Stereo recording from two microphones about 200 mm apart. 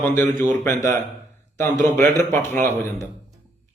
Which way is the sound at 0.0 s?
10° left (ahead or behind).